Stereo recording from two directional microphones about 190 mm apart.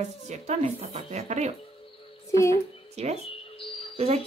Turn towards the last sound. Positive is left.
turn(degrees=-30)  # may be behind; listen again after turning